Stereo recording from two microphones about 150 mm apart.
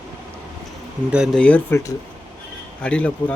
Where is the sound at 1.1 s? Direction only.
5° right (ahead or behind).